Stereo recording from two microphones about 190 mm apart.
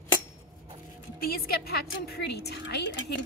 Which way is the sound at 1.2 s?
55° left (ahead or behind).